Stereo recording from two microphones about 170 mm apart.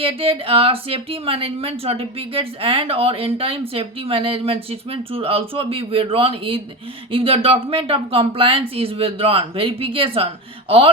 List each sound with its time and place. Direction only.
0.0 s speech: 35° right (ahead or behind)